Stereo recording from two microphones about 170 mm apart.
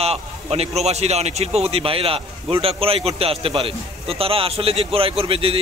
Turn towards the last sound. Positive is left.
turn(degrees=-35)  # may be behind; listen again after turning